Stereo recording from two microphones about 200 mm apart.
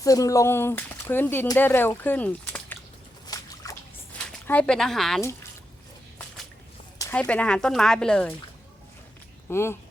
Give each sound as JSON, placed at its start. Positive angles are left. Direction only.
{"t": 0.0, "sound": "speech", "side_deg": 15}
{"t": 3.2, "sound": "a sound", "side_deg": 15}
{"t": 4.3, "sound": "speech", "side_deg": 5}
{"t": 7.0, "sound": "speech", "side_deg": 10}
{"t": 9.5, "sound": "speech", "side_deg": 10}